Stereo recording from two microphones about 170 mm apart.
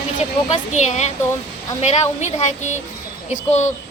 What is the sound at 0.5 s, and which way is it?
A woman's voice, 45° left (ahead or behind).